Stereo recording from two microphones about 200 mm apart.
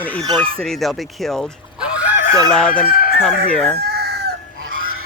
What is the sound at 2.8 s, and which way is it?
Chicken, 45° left (ahead or behind).